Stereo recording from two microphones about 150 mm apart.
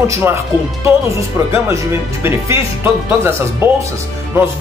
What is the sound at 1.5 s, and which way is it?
Speech, 20° right (ahead or behind).